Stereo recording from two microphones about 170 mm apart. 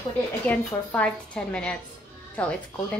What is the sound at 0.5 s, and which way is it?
A woman's voice, 5° left (ahead or behind).